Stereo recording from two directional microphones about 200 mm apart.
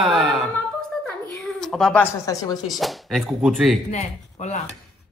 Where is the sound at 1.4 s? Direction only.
Centre (ahead or behind); by 2.8 s 20° left (ahead or behind).